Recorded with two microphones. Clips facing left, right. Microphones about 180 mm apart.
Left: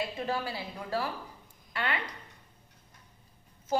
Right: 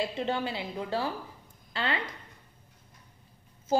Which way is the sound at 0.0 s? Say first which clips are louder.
Right 3 dB; 25° right (ahead or behind).